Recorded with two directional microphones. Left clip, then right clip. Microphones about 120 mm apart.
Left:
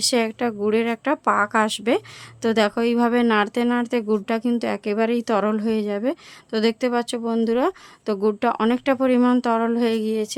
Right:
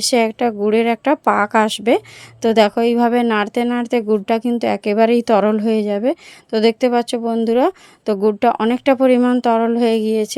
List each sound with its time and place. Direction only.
0.0 s a woman's voice: 30° right (ahead or behind)